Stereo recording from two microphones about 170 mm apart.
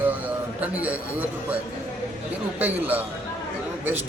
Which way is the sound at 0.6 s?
10° right (ahead or behind).